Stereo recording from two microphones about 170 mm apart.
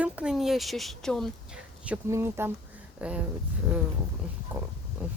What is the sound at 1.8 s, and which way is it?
Speech, 15° right (ahead or behind).